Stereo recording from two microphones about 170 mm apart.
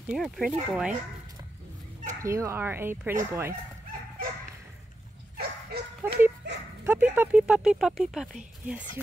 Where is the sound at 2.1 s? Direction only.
15° right (ahead or behind).